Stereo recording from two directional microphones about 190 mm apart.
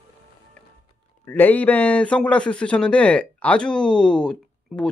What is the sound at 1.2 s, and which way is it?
Speech, 10° left (ahead or behind).